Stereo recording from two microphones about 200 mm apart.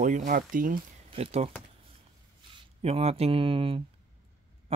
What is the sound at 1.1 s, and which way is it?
Speech, 30° right (ahead or behind).